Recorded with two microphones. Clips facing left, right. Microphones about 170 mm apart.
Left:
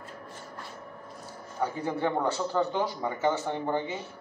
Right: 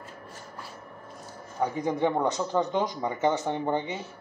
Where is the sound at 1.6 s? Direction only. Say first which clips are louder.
Right 3 dB; 15° right (ahead or behind).